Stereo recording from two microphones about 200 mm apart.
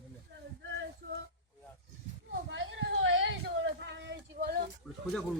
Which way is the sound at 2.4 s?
65° right (ahead or behind).